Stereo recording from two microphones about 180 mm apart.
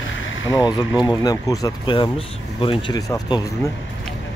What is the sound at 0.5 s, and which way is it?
Speech, 20° left (ahead or behind).